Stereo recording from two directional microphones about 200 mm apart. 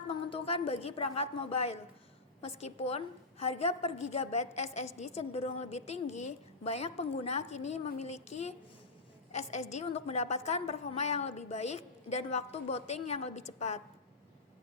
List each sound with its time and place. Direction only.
0.1 s a woman's voice: 30° left (ahead or behind)